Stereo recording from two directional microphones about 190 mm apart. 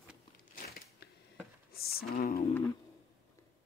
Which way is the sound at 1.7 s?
55° left (ahead or behind).